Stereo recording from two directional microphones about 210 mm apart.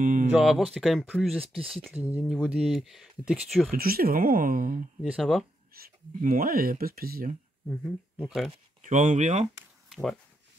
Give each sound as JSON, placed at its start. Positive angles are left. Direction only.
{"t": 0.0, "sound": "a sound", "side_deg": -40}
{"t": 0.3, "sound": "speech", "side_deg": -5}
{"t": 3.7, "sound": "speech", "side_deg": -45}
{"t": 5.0, "sound": "speech", "side_deg": 0}
{"t": 5.7, "sound": "speech", "side_deg": -45}
{"t": 7.7, "sound": "speech", "side_deg": 0}
{"t": 8.8, "sound": "speech", "side_deg": -35}
{"t": 9.8, "sound": "a sound", "side_deg": 0}